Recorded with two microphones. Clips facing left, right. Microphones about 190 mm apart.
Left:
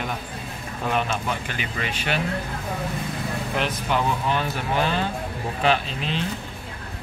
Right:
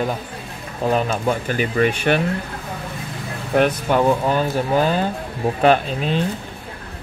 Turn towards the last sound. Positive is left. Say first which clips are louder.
# right 7 dB
turn(degrees=-45)  # may be behind; listen again after turning